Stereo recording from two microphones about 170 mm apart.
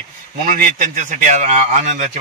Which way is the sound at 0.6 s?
50° right (ahead or behind).